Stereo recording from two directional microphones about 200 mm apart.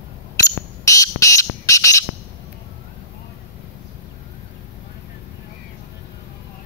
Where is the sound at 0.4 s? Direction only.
15° left (ahead or behind).